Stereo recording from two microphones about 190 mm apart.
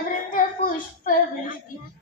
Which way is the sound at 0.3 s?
45° left (ahead or behind).